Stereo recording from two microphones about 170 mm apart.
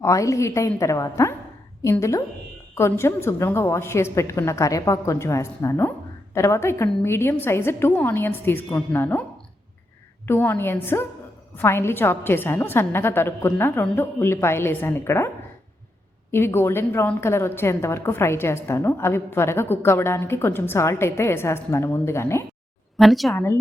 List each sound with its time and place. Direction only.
0.0 s a woman's voice: 20° left (ahead or behind)
10.2 s a woman's voice: 10° left (ahead or behind)
16.3 s a woman's voice: 15° left (ahead or behind)
23.0 s speech: centre (ahead or behind)
23.3 s a woman's voice: 15° left (ahead or behind)